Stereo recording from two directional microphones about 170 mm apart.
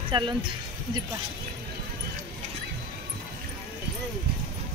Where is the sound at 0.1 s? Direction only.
30° right (ahead or behind).